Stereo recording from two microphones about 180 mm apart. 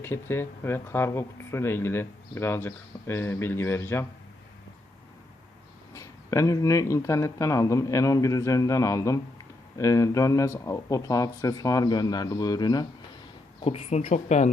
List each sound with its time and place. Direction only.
0.0 s speech: 15° left (ahead or behind)
5.9 s speech: 15° left (ahead or behind)
13.6 s speech: 35° left (ahead or behind)